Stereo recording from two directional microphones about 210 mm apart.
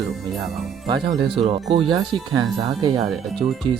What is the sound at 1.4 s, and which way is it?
Speech, 25° right (ahead or behind).